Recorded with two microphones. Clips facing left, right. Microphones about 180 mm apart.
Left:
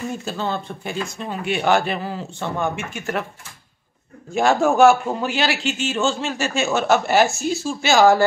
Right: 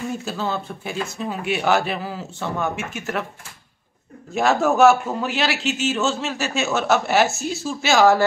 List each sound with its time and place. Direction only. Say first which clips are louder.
0.1 s a man's voice: even; 5° right (ahead or behind)
4.3 s a man's voice: left 1 dB; centre (ahead or behind)